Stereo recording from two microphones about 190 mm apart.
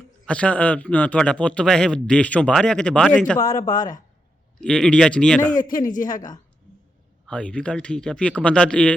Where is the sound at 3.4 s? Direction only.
45° left (ahead or behind).